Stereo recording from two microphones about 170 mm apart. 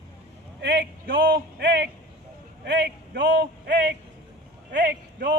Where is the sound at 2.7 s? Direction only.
85° right.